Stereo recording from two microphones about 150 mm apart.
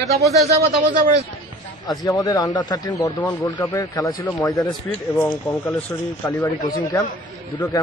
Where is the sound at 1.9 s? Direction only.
25° left (ahead or behind).